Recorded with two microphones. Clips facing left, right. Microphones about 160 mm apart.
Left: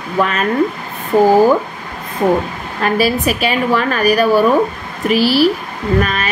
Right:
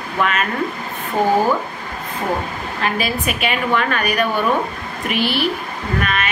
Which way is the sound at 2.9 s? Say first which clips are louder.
Left 7 dB; 35° left (ahead or behind).